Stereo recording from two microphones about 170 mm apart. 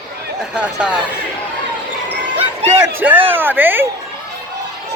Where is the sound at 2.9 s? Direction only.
10° right (ahead or behind).